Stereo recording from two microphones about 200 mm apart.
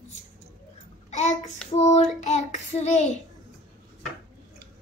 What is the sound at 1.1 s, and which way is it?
Child singing, 35° left (ahead or behind).